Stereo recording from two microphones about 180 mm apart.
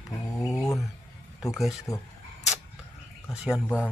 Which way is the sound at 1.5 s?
Centre (ahead or behind).